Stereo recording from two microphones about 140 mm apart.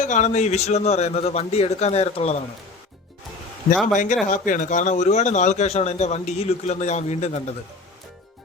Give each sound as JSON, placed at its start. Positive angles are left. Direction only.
{"t": 0.0, "sound": "a man's voice", "side_deg": 60}
{"t": 3.9, "sound": "speech", "side_deg": 60}